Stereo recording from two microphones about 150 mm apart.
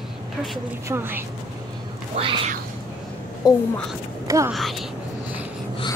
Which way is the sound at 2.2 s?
40° right (ahead or behind).